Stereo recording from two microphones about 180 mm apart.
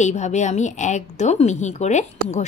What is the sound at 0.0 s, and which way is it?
Speech, 40° left (ahead or behind).